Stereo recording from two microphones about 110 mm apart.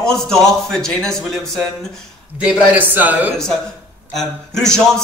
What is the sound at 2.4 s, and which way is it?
Speech, 15° right (ahead or behind).